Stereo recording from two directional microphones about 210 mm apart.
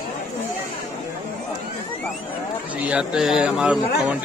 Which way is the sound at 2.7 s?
5° right (ahead or behind).